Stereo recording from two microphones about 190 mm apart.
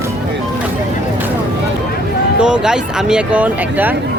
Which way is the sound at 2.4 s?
5° right (ahead or behind).